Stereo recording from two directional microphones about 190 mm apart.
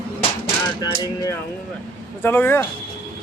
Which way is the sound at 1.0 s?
20° left (ahead or behind).